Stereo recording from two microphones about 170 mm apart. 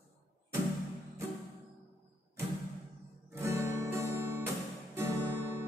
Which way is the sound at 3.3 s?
15° right (ahead or behind).